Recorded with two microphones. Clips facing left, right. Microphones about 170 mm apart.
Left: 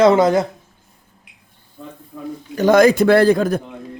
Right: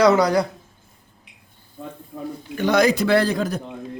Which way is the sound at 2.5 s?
45° left (ahead or behind).